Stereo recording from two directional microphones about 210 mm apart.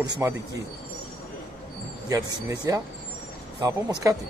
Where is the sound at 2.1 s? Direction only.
15° right (ahead or behind).